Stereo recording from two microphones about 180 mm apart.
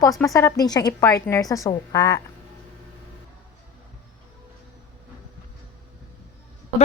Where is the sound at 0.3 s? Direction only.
20° left (ahead or behind).